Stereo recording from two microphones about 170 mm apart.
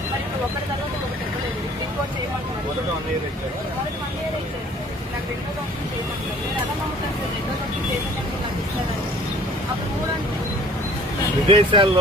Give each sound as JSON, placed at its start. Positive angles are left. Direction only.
{"t": 11.4, "sound": "speech", "side_deg": -30}